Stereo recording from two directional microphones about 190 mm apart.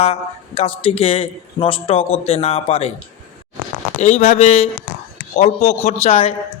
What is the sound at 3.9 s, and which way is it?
A man's voice, 35° left (ahead or behind).